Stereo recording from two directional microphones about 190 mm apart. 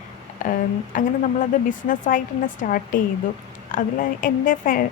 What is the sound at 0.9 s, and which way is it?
A woman's voice, 45° left (ahead or behind).